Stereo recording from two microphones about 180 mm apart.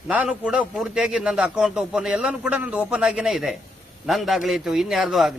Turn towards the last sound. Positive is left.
turn(degrees=0)  # may be behind; listen again after turning